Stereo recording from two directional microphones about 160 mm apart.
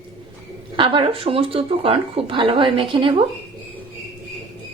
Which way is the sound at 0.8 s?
35° right (ahead or behind).